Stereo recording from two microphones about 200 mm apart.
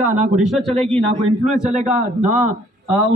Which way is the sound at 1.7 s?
35° right (ahead or behind).